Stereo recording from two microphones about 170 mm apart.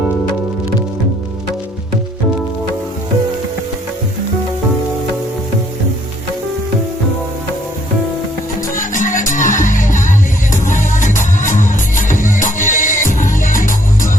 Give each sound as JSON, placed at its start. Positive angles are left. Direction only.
{"t": 8.7, "sound": "music", "side_deg": 50}